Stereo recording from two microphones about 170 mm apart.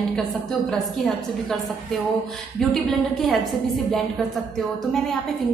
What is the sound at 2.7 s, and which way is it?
Speech, centre (ahead or behind).